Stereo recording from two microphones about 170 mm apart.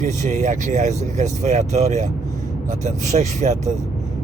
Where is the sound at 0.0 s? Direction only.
45° right (ahead or behind).